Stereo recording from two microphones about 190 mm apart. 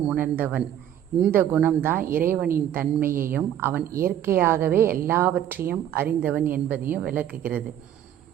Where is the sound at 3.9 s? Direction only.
50° right (ahead or behind).